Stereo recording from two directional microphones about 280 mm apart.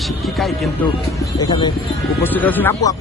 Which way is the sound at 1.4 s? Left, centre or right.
Centre.